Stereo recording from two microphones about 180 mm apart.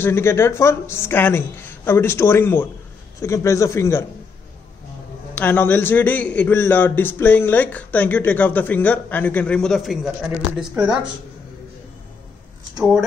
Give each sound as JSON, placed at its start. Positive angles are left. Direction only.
{"t": 0.0, "sound": "a man's voice", "side_deg": 15}
{"t": 5.3, "sound": "a man's voice", "side_deg": 10}